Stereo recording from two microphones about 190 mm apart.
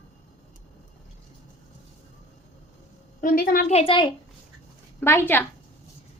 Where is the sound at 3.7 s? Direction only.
25° left (ahead or behind).